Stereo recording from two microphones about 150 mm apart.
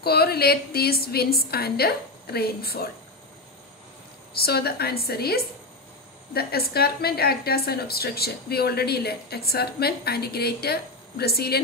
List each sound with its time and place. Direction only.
0.0 s a woman's voice: 90° left
4.4 s a woman's voice: 90° left